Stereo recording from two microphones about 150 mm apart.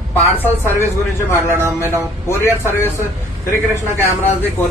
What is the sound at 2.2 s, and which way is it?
Speech, 15° left (ahead or behind).